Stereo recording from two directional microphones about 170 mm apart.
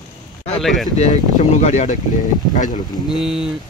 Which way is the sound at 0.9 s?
40° left (ahead or behind).